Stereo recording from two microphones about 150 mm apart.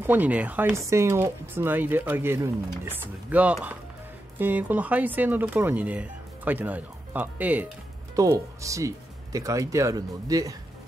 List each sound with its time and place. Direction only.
0.0 s speech: 10° right (ahead or behind)
8.2 s speech: 20° right (ahead or behind)